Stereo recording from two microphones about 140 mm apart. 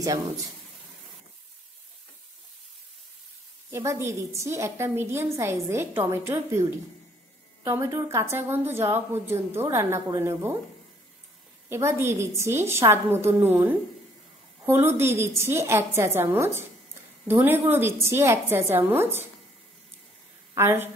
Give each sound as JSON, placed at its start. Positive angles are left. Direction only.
{"t": 3.7, "sound": "a woman's voice", "side_deg": -20}
{"t": 7.6, "sound": "a woman's voice", "side_deg": -20}
{"t": 11.7, "sound": "a woman's voice", "side_deg": -20}
{"t": 20.5, "sound": "a woman's voice", "side_deg": -15}